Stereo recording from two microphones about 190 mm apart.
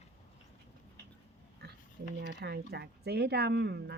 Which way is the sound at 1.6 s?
60° right (ahead or behind).